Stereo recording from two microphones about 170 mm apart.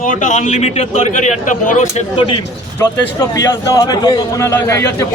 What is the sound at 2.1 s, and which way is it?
A man's voice, 30° left (ahead or behind).